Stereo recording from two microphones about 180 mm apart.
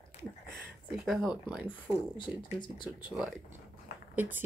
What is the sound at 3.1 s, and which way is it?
Speech, centre (ahead or behind).